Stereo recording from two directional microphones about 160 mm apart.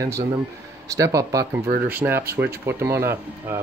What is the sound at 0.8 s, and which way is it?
Speech, 20° right (ahead or behind).